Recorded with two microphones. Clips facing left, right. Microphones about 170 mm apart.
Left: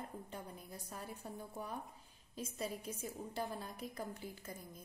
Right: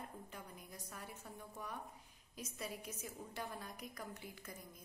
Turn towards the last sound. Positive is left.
turn(degrees=30)  # may be behind; listen again after turning